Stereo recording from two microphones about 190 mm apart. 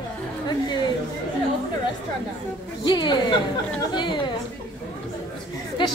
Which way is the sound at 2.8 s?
25° left (ahead or behind).